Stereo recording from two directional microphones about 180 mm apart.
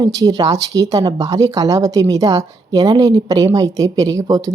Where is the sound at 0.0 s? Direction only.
20° right (ahead or behind).